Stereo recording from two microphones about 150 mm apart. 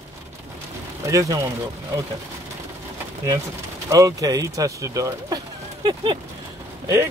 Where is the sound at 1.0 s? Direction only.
20° right (ahead or behind).